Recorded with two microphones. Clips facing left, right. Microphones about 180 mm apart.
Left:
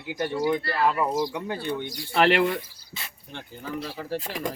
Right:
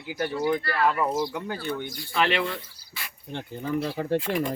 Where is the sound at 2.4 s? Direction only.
20° left (ahead or behind).